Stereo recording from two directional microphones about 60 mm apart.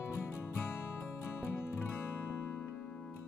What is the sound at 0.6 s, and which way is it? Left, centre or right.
Music, left.